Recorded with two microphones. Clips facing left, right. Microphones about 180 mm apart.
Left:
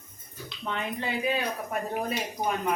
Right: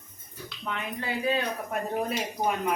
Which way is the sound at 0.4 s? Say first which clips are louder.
Left 2 dB; 20° left (ahead or behind).